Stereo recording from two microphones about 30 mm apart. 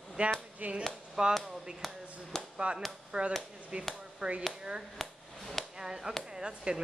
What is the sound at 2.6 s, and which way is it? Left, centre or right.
Speech, right.